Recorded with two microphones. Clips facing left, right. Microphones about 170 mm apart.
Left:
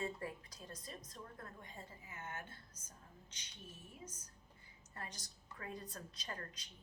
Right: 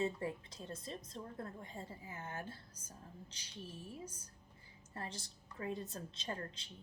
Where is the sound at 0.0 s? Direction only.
25° right (ahead or behind).